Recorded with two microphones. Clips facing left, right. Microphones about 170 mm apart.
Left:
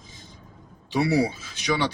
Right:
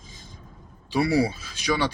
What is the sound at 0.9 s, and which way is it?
Speech, 15° left (ahead or behind).